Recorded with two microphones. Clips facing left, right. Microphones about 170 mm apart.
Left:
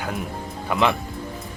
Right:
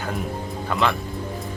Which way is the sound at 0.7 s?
20° left (ahead or behind).